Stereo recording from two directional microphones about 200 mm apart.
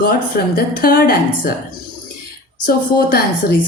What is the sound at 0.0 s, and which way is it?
A woman's voice, 50° left (ahead or behind).